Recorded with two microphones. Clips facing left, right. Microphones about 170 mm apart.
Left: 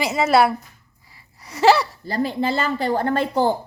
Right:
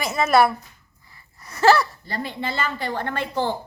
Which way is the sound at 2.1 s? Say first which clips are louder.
Left 7 dB; 40° left (ahead or behind).